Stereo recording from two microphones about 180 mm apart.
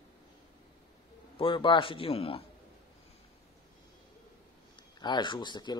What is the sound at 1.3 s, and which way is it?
Speech, 25° left (ahead or behind).